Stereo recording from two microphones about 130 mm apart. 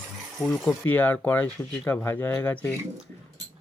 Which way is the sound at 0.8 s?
15° left (ahead or behind).